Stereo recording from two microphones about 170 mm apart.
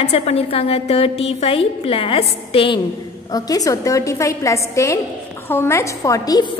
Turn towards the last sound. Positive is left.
turn(degrees=20)  # may be behind; listen again after turning